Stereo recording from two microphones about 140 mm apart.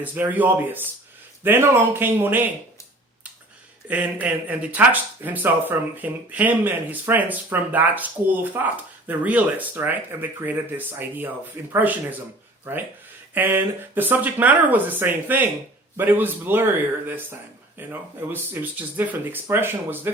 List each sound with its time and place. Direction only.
0.0 s speech: 10° right (ahead or behind)
3.8 s speech: 10° right (ahead or behind)